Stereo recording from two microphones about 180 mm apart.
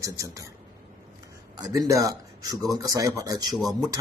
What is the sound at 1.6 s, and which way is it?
Speech, 20° right (ahead or behind).